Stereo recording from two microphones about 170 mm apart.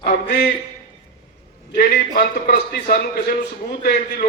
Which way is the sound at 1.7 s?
60° left (ahead or behind).